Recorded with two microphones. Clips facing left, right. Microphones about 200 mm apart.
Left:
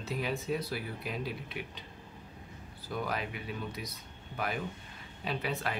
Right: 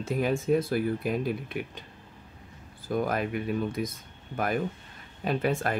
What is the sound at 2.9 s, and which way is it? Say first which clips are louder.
Speech: right 8 dB; 50° right (ahead or behind).